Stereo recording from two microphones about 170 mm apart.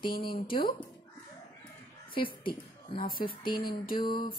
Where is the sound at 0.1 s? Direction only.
60° left (ahead or behind).